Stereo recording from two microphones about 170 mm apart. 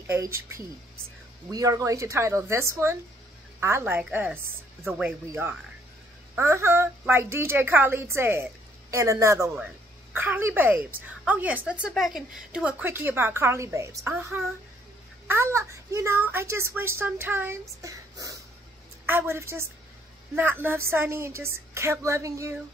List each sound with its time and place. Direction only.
0.0 s a woman's voice: 15° right (ahead or behind)